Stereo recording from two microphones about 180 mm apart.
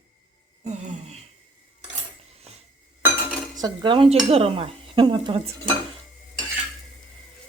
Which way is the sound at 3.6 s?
25° right (ahead or behind).